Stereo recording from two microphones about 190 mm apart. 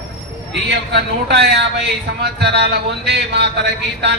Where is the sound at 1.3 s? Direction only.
60° right (ahead or behind).